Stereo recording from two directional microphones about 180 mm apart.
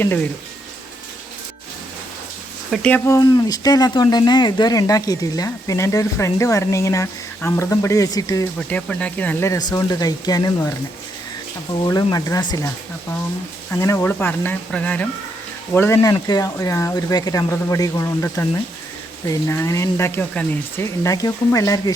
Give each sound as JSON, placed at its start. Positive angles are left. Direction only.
{"t": 0.0, "sound": "speech", "side_deg": 10}
{"t": 2.7, "sound": "speech", "side_deg": 5}
{"t": 3.1, "sound": "speech", "side_deg": 20}
{"t": 8.5, "sound": "speech", "side_deg": 5}
{"t": 11.7, "sound": "speech", "side_deg": 20}